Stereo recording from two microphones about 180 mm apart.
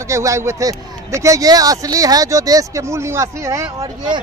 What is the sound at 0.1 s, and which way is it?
Speech, 15° right (ahead or behind).